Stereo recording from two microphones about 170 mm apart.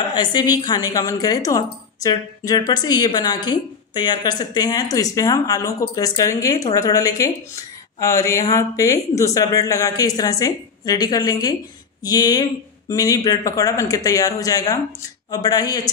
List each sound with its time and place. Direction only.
0.1 s speech: 25° left (ahead or behind)